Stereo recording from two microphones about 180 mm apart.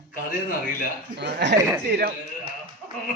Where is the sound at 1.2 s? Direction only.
65° right (ahead or behind).